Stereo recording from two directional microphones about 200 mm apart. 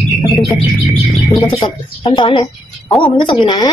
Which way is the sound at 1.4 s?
25° left (ahead or behind).